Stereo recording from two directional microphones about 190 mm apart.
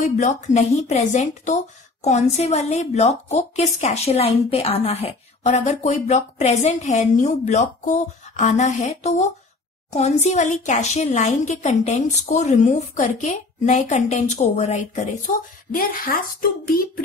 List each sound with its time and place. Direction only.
0.0 s a woman's voice: 40° left (ahead or behind)